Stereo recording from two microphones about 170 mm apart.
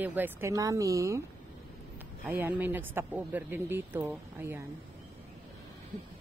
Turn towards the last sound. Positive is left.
turn(degrees=-10)  # may be behind; listen again after turning